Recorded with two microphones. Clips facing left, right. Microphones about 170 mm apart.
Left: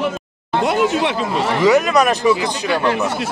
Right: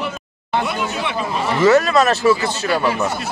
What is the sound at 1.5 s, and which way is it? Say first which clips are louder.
Speech: right 1 dB; 15° left (ahead or behind).